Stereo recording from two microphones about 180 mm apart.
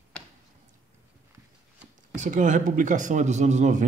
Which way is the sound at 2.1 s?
45° right (ahead or behind).